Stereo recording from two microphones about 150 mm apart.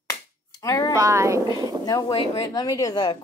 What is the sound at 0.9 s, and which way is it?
Speech, 20° right (ahead or behind).